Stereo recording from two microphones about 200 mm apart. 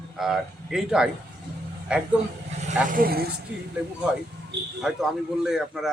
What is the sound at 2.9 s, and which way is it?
Speech, 50° right (ahead or behind).